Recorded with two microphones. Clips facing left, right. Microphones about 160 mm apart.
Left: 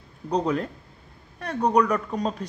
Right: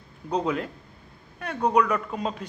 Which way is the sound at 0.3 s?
5° right (ahead or behind).